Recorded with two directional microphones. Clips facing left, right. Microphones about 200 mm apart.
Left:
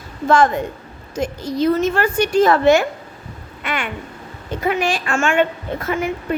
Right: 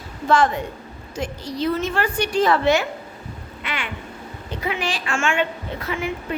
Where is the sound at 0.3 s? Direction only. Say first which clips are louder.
Left 3 dB; 45° left (ahead or behind).